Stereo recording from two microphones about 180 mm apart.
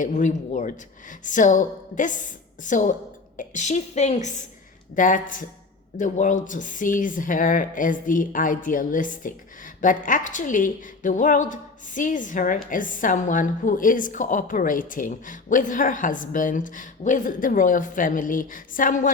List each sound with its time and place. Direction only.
0.0 s a woman's voice: 45° left (ahead or behind)